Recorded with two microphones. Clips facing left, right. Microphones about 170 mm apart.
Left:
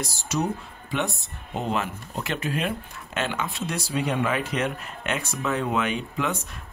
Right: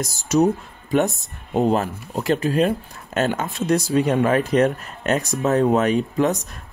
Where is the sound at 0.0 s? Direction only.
45° right (ahead or behind).